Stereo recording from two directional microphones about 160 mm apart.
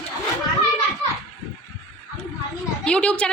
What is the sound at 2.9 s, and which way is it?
Speech, 5° left (ahead or behind).